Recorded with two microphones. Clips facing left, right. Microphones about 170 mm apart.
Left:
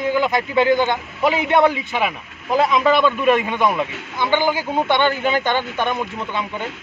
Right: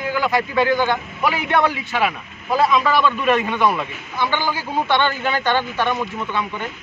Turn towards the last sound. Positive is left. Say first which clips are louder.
# right 1 dB
turn(degrees=20)  # may be behind; listen again after turning